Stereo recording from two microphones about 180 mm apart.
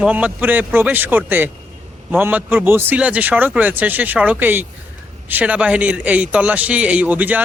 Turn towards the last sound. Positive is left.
turn(degrees=-10)  # may be behind; listen again after turning